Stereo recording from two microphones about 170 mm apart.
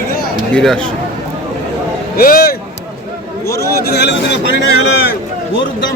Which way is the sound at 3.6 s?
75° left (ahead or behind).